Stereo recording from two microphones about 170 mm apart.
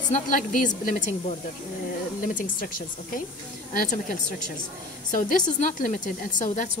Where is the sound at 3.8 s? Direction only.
50° left (ahead or behind).